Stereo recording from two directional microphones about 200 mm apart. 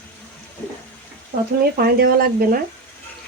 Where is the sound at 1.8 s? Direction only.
50° right (ahead or behind).